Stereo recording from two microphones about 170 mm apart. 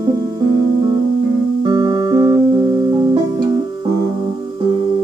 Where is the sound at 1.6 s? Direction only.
20° right (ahead or behind).